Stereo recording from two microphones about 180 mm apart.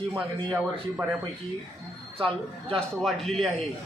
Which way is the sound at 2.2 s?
30° right (ahead or behind).